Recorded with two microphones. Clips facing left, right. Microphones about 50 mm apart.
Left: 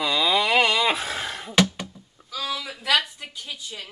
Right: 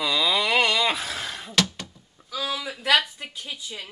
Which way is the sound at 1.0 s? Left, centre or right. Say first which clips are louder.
Left 2 dB; left.